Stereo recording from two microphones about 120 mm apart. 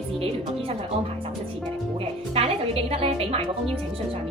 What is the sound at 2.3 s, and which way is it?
A woman's voice, 55° right (ahead or behind).